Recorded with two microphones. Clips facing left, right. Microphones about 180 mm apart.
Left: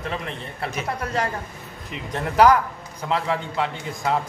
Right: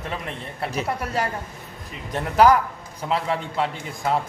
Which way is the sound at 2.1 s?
Centre (ahead or behind).